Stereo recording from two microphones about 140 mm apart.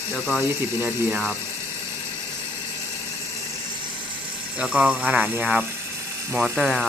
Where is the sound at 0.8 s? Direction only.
15° right (ahead or behind).